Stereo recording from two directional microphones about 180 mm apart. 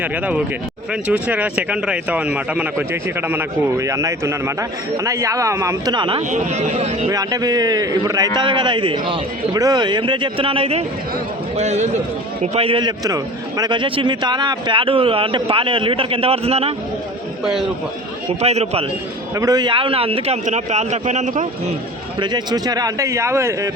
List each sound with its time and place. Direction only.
0.0 s speech: 10° right (ahead or behind); by 6.2 s 25° right (ahead or behind)
6.3 s a man's voice: 40° right (ahead or behind)
7.1 s a man's voice: 20° right (ahead or behind)
18.4 s a man's voice: 35° right (ahead or behind)
19.4 s a man's voice: 20° right (ahead or behind); by 21.4 s 40° right (ahead or behind)
22.2 s speech: 25° right (ahead or behind)